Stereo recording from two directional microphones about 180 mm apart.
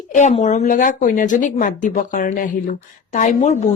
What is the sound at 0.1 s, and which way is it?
A woman's voice, 40° left (ahead or behind).